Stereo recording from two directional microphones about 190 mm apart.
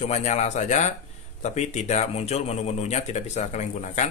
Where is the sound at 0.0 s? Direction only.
35° left (ahead or behind).